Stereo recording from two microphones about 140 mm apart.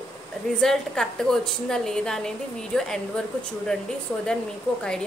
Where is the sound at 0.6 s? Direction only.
5° left (ahead or behind).